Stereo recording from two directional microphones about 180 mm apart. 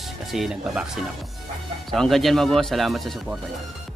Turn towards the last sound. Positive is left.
turn(degrees=0)  # may be behind; listen again after turning